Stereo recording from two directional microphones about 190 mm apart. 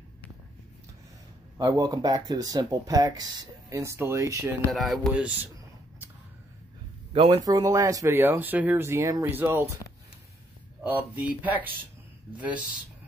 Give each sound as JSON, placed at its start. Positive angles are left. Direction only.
{"t": 1.6, "sound": "speech", "side_deg": -20}
{"t": 4.6, "sound": "speech", "side_deg": 0}
{"t": 7.1, "sound": "speech", "side_deg": -30}
{"t": 10.8, "sound": "speech", "side_deg": -10}